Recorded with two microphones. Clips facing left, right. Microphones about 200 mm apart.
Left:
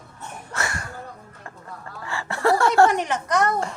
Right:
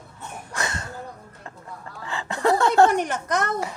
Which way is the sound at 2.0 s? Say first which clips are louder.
Even; 20° right (ahead or behind).